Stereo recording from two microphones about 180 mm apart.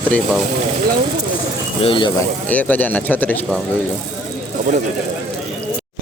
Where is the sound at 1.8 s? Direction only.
30° left (ahead or behind).